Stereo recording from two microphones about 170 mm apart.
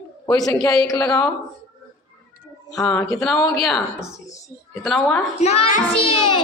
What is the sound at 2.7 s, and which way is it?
Speech, 20° left (ahead or behind).